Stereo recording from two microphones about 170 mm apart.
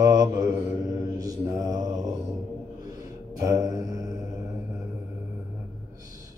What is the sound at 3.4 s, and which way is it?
Mantra, 20° right (ahead or behind).